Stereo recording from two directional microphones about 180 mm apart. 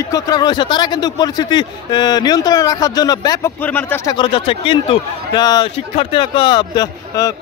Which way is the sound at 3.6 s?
10° left (ahead or behind).